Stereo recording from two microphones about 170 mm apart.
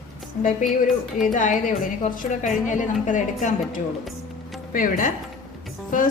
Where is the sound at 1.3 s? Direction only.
50° left (ahead or behind).